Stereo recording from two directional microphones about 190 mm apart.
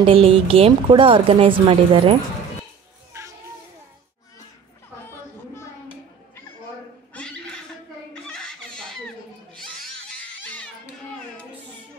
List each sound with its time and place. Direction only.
0.0 s speech: 30° right (ahead or behind)
3.1 s children playing: 15° right (ahead or behind)
7.2 s a sound: 5° left (ahead or behind)